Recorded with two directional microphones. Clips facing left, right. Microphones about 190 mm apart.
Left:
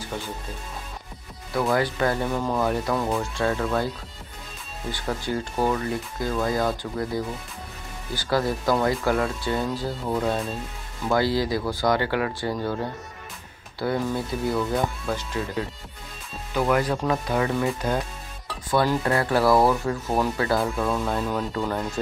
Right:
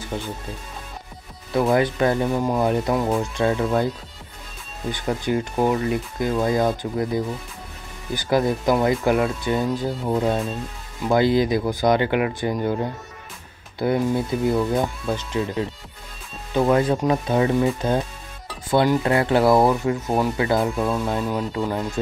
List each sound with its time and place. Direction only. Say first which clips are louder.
1.5 s speech: right 4 dB; 20° right (ahead or behind)
4.9 s speech: right 5 dB; 20° right (ahead or behind)